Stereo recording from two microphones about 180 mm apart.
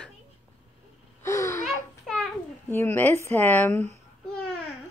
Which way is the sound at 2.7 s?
10° left (ahead or behind).